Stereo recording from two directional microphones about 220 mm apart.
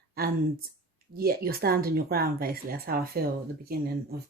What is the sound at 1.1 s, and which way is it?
A woman's voice, 45° right (ahead or behind).